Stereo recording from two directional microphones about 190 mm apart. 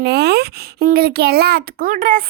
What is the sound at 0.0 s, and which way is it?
A child's voice, 60° right (ahead or behind).